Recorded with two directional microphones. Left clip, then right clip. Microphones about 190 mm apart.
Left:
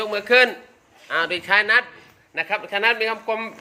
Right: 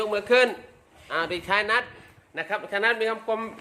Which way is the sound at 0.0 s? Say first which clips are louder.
Left 4 dB; centre (ahead or behind).